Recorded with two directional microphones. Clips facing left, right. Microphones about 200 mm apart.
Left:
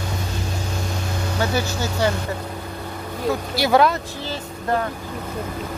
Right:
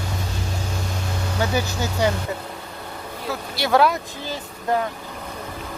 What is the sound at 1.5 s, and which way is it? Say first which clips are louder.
Speech: left 1 dB; 15° right (ahead or behind).